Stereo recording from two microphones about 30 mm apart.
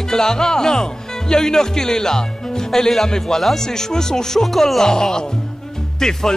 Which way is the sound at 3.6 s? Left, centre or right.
Centre.